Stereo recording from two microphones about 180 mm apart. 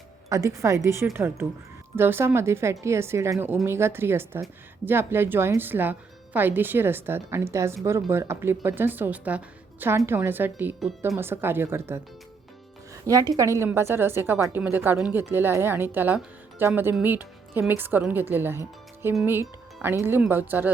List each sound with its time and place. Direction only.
0.3 s speech: 20° right (ahead or behind)
13.1 s speech: 20° right (ahead or behind)